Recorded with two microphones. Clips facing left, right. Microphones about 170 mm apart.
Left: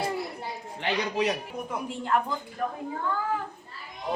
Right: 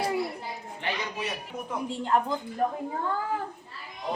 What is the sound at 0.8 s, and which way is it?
Speech, 90° left.